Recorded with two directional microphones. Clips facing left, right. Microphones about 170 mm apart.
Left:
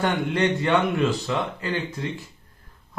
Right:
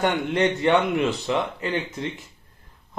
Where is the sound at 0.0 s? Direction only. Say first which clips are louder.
Right 1 dB; 20° right (ahead or behind).